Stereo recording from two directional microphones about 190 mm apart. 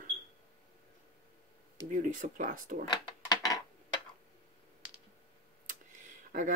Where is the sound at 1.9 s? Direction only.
45° right (ahead or behind).